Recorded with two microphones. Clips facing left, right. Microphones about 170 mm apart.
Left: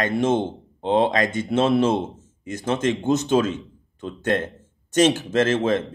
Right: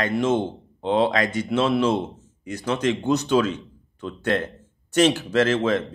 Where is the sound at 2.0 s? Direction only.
20° left (ahead or behind).